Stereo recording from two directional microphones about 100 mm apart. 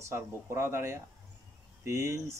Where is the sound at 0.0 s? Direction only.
25° right (ahead or behind).